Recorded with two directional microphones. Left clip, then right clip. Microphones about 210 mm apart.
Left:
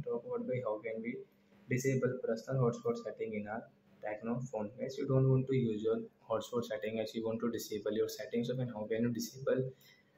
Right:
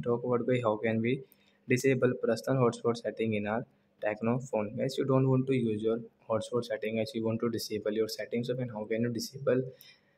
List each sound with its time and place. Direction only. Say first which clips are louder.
0.0 s speech: right 8 dB; 40° right (ahead or behind)